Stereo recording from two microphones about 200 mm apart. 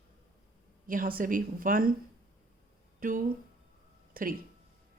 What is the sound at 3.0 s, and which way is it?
Speech, 40° right (ahead or behind).